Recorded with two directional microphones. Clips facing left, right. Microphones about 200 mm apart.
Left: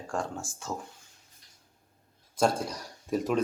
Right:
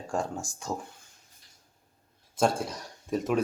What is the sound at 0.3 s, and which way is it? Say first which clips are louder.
Speech: right 2 dB; 15° right (ahead or behind).